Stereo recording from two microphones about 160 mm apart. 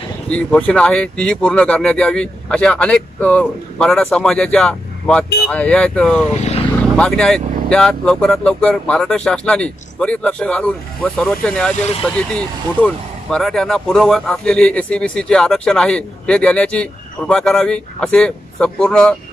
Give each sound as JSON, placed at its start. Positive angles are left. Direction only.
{"t": 0.3, "sound": "speech", "side_deg": 10}
{"t": 6.3, "sound": "vehicle", "side_deg": 45}
{"t": 7.0, "sound": "speech", "side_deg": 5}